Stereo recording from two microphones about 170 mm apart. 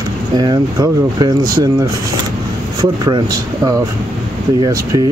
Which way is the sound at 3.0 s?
20° right (ahead or behind).